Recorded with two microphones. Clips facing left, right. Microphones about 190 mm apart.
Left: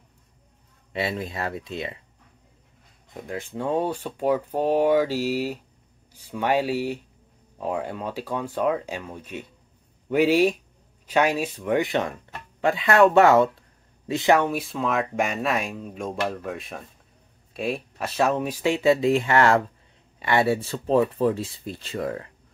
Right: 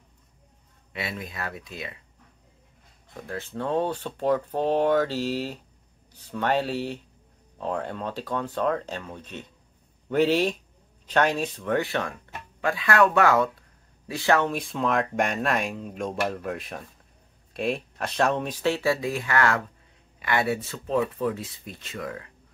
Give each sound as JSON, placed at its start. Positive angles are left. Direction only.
{"t": 0.9, "sound": "speech", "side_deg": 30}
{"t": 3.1, "sound": "speech", "side_deg": 15}